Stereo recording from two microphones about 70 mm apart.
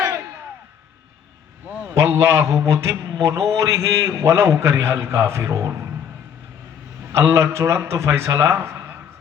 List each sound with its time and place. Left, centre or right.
2.0 s a man's voice: right
7.1 s a man's voice: right